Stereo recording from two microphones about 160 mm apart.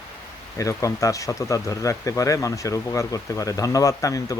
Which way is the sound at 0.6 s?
20° left (ahead or behind).